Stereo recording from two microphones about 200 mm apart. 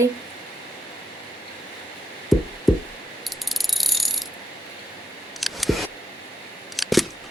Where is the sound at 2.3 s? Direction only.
Centre (ahead or behind).